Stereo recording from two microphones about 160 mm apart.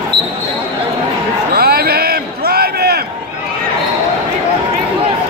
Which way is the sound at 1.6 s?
70° right (ahead or behind).